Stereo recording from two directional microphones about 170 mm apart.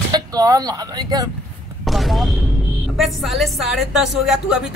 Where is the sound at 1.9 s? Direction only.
Centre (ahead or behind).